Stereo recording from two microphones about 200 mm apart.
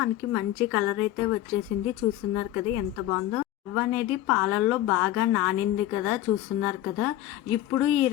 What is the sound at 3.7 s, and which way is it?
Speech, 5° right (ahead or behind).